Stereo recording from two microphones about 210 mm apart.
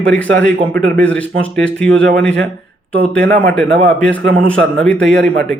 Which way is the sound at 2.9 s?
45° right (ahead or behind).